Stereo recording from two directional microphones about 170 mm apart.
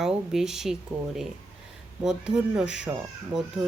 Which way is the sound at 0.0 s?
Centre (ahead or behind).